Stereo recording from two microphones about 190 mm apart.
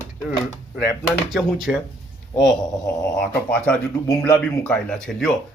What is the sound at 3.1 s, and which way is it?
Speech, 5° left (ahead or behind).